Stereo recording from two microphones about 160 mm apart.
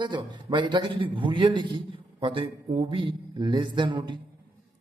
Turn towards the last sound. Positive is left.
turn(degrees=-30)  # may be behind; listen again after turning